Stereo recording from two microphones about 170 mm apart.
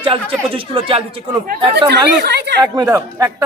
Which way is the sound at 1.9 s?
75° right (ahead or behind).